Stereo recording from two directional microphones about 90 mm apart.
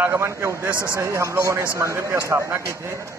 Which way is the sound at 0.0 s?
25° right (ahead or behind).